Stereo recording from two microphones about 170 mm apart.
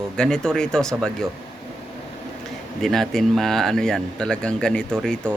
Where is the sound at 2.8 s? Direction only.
Centre (ahead or behind).